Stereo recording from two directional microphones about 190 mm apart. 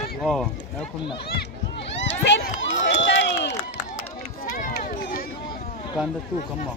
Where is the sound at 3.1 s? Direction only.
65° left (ahead or behind).